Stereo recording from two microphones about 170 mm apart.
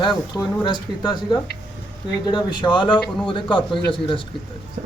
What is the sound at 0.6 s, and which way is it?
A man's voice, 25° left (ahead or behind).